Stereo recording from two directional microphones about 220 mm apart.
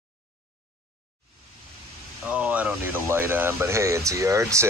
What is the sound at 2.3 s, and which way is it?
Speech, 5° right (ahead or behind).